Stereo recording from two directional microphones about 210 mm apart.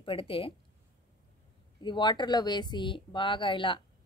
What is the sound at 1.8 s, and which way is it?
A woman's voice, 20° left (ahead or behind).